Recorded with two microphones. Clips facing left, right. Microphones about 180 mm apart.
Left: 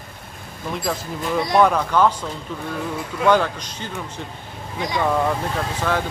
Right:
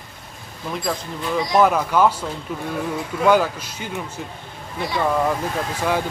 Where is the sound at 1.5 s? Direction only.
5° right (ahead or behind).